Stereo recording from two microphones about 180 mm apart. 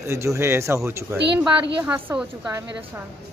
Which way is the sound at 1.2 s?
70° right (ahead or behind).